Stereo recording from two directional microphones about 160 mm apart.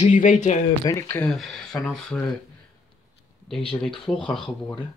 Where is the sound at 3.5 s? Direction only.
Centre (ahead or behind).